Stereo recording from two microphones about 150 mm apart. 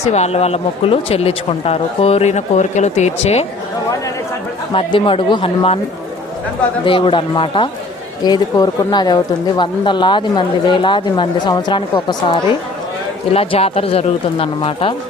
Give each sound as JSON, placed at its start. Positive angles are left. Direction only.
{"t": 0.0, "sound": "speech", "side_deg": 45}
{"t": 4.7, "sound": "speech", "side_deg": 35}
{"t": 6.8, "sound": "speech", "side_deg": 35}